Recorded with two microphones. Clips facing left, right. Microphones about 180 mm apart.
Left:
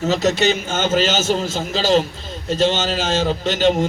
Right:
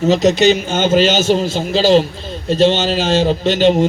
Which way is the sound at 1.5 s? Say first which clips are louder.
Right 5 dB; 35° right (ahead or behind).